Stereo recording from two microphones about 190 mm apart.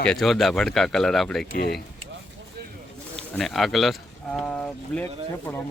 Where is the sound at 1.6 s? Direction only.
55° left (ahead or behind).